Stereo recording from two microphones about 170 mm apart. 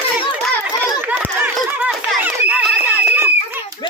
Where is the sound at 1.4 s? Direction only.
10° right (ahead or behind).